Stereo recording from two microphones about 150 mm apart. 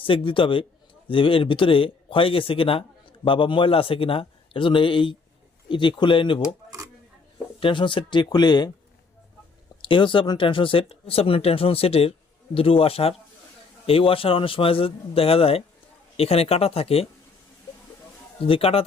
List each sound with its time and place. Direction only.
0.0 s speech: 35° left (ahead or behind)
6.7 s a sound: 20° right (ahead or behind)
7.6 s speech: 35° left (ahead or behind)
9.9 s speech: 35° left (ahead or behind)
18.3 s speech: 40° left (ahead or behind)